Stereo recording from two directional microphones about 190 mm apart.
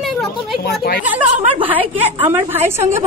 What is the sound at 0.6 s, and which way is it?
Speech, 55° left (ahead or behind).